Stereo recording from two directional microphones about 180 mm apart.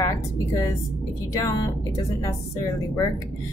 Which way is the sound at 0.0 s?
20° left (ahead or behind).